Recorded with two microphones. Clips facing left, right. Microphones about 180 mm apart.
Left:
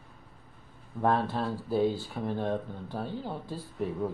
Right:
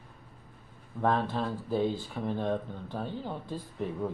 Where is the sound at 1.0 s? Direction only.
10° left (ahead or behind).